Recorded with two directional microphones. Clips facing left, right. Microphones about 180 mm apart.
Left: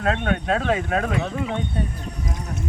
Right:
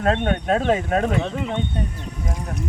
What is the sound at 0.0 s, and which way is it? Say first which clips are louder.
Speech: right 2 dB; 30° right (ahead or behind).